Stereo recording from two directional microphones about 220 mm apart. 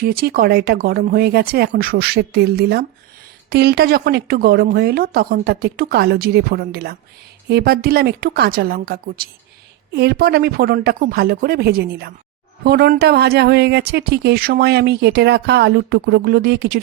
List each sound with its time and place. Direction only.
0.0 s speech: 45° right (ahead or behind)